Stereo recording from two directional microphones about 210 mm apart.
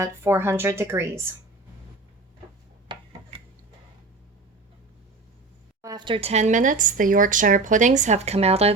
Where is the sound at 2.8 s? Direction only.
25° right (ahead or behind).